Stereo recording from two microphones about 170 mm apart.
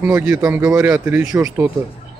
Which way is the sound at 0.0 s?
15° right (ahead or behind).